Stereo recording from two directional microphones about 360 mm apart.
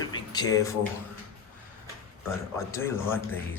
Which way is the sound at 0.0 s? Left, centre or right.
Centre.